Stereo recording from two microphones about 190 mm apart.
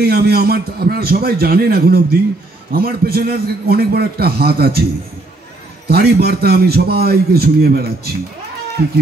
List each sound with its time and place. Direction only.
0.0 s a man's voice: 55° right (ahead or behind)
5.9 s a man's voice: 55° right (ahead or behind)